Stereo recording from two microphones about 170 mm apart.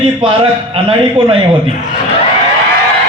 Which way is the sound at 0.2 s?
30° right (ahead or behind).